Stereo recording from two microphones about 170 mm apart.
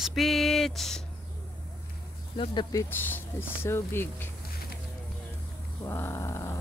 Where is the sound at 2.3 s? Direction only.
30° left (ahead or behind).